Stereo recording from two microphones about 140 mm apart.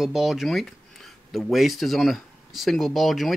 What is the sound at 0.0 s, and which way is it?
Speech, 5° right (ahead or behind).